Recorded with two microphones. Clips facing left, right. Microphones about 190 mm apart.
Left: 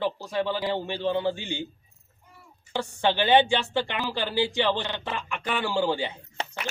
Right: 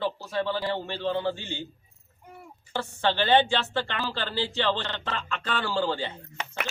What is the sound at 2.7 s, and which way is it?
A woman's voice, 15° left (ahead or behind).